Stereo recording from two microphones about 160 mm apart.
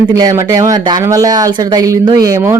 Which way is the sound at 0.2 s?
20° right (ahead or behind).